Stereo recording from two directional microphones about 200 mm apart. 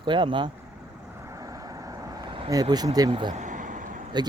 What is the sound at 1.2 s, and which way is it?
Vehicle, 15° right (ahead or behind).